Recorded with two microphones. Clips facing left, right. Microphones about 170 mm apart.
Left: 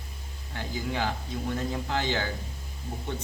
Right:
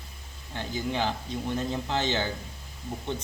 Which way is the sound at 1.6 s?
20° right (ahead or behind).